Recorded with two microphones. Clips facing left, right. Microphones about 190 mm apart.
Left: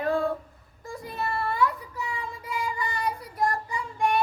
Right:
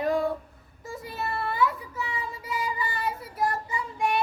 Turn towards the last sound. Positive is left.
turn(degrees=0)  # may be behind; listen again after turning